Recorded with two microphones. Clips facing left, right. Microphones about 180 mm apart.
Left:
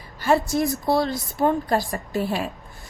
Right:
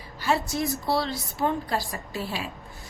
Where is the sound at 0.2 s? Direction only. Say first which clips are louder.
Left 6 dB; 50° left (ahead or behind).